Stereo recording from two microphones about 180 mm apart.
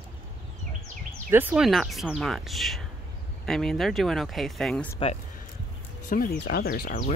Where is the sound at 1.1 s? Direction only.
10° right (ahead or behind).